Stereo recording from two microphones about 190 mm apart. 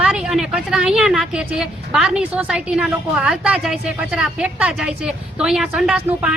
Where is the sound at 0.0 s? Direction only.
5° right (ahead or behind).